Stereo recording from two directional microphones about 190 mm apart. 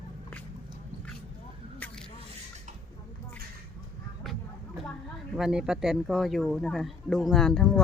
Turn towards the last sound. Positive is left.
turn(degrees=5)  # may be behind; listen again after turning